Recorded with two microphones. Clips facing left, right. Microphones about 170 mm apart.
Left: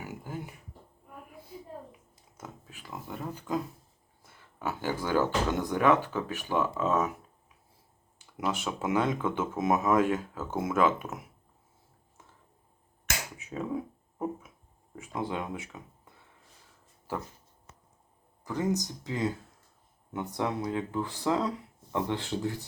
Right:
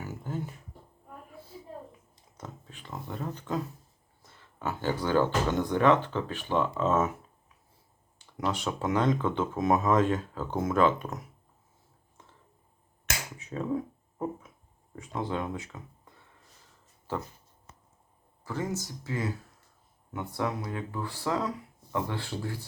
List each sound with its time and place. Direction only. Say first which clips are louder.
0.0 s a sound: right 3 dB; 10° left (ahead or behind)
2.4 s speech: right 1 dB; 5° left (ahead or behind)
8.4 s speech: right 1 dB; 5° left (ahead or behind)
9.6 s speech: right 1 dB; 20° left (ahead or behind)
9.8 s speech: even; 10° left (ahead or behind)
13.4 s speech: right 3 dB; 10° left (ahead or behind)
18.4 s speech: left 3 dB; 15° left (ahead or behind)